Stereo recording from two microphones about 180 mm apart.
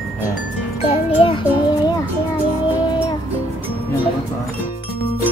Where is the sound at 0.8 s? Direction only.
30° left (ahead or behind).